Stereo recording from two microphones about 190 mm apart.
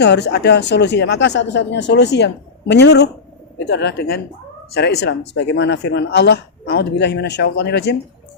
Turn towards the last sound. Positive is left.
turn(degrees=60)  # may be behind; listen again after turning